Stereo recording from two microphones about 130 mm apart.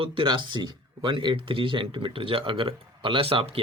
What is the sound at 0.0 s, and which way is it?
Speech, 40° right (ahead or behind).